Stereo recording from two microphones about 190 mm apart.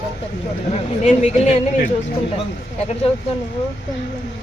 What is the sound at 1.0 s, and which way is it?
Speech, 35° left (ahead or behind).